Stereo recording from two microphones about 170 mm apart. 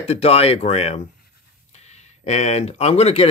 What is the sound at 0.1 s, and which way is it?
Speech, 35° left (ahead or behind).